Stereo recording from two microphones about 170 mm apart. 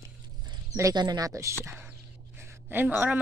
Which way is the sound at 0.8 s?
20° right (ahead or behind).